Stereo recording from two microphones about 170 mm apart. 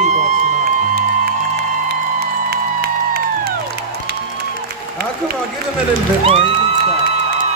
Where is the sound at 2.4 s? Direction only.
70° right (ahead or behind).